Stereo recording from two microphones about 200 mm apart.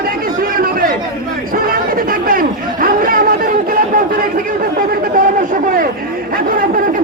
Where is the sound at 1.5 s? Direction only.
45° right (ahead or behind).